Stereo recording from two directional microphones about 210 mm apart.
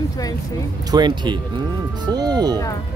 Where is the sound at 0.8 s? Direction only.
20° right (ahead or behind).